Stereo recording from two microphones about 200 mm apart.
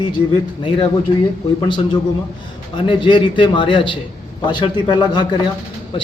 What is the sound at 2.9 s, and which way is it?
A man's voice, 25° left (ahead or behind).